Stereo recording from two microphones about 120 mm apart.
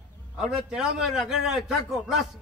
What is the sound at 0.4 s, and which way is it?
A man's voice, 5° right (ahead or behind).